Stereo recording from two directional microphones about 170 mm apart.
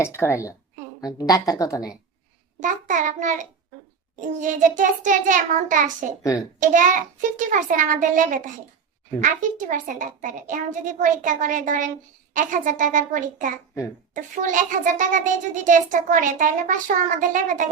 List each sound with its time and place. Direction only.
0.0 s a woman's voice: 15° left (ahead or behind)
2.6 s a child's voice: 50° right (ahead or behind)